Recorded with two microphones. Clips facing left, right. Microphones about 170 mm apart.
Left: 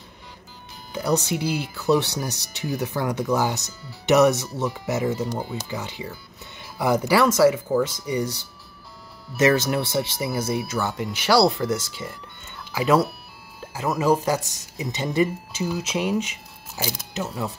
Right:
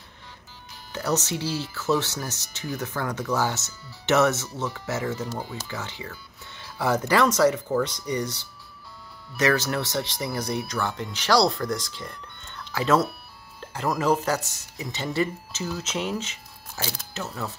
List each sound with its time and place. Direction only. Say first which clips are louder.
0.9 s speech: left 3 dB; 15° left (ahead or behind)
9.4 s speech: left 4 dB; 20° left (ahead or behind)